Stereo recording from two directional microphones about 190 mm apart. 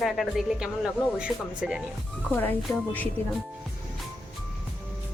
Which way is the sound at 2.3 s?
10° left (ahead or behind).